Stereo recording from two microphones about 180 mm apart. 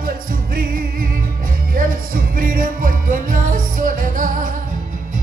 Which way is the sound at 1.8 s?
50° right (ahead or behind).